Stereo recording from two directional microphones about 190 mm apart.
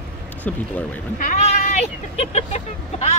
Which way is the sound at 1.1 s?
40° left (ahead or behind).